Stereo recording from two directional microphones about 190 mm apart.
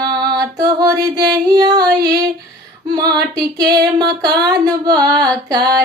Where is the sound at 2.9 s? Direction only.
20° right (ahead or behind).